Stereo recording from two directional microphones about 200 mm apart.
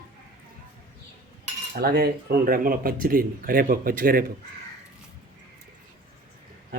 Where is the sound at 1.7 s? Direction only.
50° right (ahead or behind).